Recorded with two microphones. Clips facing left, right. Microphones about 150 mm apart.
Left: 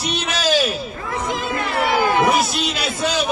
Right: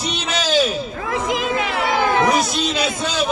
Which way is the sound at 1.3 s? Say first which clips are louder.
Right 2 dB; 90° right.